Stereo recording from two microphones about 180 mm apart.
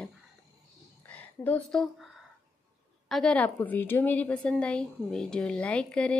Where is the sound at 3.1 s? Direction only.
5° left (ahead or behind).